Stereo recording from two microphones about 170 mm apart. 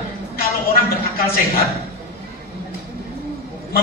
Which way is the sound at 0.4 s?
60° left (ahead or behind).